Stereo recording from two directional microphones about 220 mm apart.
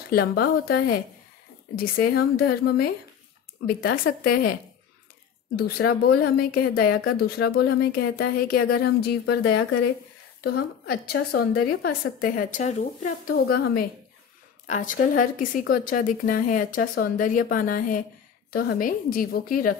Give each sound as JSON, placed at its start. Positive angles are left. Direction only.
{"t": 0.1, "sound": "a woman's voice", "side_deg": 45}
{"t": 5.6, "sound": "a woman's voice", "side_deg": 45}
{"t": 13.3, "sound": "a woman's voice", "side_deg": 45}